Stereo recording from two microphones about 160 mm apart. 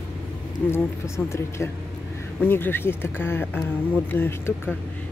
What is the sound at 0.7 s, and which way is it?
Speech, 15° left (ahead or behind).